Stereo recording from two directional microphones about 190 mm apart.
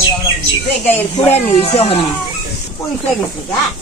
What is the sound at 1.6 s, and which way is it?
Speech, 30° left (ahead or behind).